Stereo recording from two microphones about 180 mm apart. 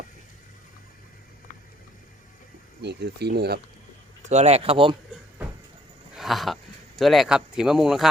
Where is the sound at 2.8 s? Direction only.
65° right (ahead or behind).